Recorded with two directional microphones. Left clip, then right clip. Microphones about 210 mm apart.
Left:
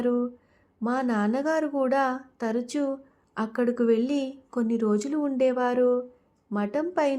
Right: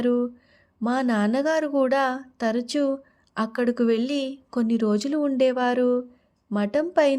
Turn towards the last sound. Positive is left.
turn(degrees=-35)  # may be behind; listen again after turning